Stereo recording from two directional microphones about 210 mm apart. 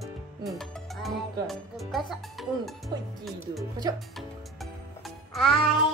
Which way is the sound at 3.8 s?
15° right (ahead or behind).